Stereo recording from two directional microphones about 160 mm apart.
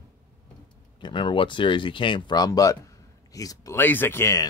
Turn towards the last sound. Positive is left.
turn(degrees=15)  # may be behind; listen again after turning